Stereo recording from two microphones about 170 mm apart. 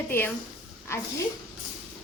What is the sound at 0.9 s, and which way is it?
Speech, 15° left (ahead or behind).